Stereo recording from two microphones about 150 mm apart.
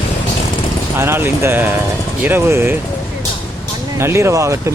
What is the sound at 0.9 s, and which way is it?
Speech, 15° right (ahead or behind).